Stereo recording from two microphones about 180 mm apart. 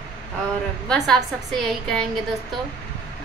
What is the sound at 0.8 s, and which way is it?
A woman's voice, 5° left (ahead or behind).